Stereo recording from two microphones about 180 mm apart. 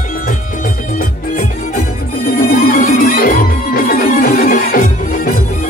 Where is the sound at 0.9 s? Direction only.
55° left (ahead or behind).